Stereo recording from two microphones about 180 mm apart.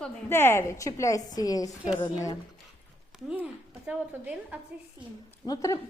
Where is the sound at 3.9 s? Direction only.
10° right (ahead or behind).